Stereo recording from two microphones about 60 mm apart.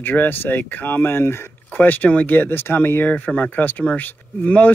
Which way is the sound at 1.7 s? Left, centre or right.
Left.